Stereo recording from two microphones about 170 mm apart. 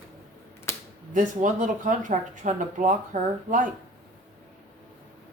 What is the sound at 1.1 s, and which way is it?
Speech, 50° right (ahead or behind).